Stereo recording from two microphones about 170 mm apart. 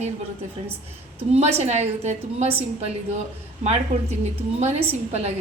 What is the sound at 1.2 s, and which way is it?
A woman's voice, 35° right (ahead or behind).